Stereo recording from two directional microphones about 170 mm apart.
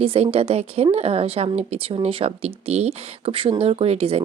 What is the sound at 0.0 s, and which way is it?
Speech, 35° right (ahead or behind).